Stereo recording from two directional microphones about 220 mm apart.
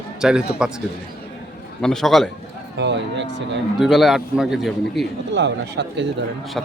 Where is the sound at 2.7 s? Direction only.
55° right (ahead or behind).